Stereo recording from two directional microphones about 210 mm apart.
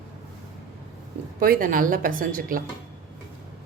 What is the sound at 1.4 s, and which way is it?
A woman's voice, 40° right (ahead or behind).